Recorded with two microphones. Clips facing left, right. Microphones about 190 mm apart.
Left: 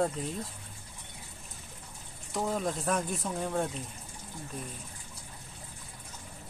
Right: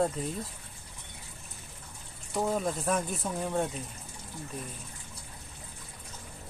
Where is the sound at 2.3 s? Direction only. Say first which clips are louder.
Right 2 dB; 5° right (ahead or behind).